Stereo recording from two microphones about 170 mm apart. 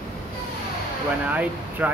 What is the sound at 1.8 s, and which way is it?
Speech, 10° right (ahead or behind).